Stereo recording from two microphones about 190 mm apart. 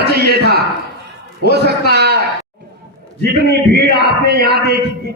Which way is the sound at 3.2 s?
60° right (ahead or behind).